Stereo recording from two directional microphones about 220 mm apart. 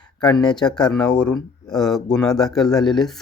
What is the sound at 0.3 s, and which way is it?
Speech, 20° left (ahead or behind).